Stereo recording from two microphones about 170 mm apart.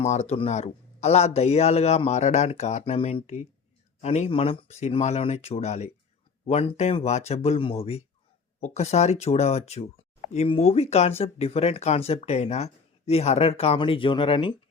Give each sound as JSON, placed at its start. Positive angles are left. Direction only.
{"t": 0.0, "sound": "speech", "side_deg": 40}